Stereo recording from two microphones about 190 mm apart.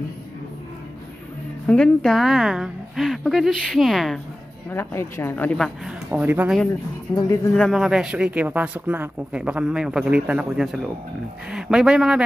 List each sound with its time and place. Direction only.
1.7 s speech: 5° left (ahead or behind)
4.6 s a woman's voice: 10° left (ahead or behind)
5.9 s speech: 5° right (ahead or behind)
7.1 s speech: 25° left (ahead or behind)
7.5 s speech: centre (ahead or behind)